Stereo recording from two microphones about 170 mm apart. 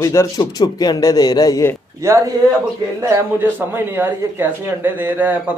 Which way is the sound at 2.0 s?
15° right (ahead or behind).